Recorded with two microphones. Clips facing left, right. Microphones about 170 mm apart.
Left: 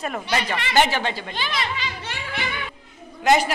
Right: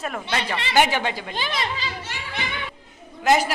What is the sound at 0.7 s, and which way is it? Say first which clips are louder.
Speech: even; 10° right (ahead or behind).